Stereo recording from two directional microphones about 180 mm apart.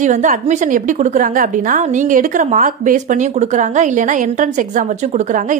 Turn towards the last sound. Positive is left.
turn(degrees=-45)  # may be behind; listen again after turning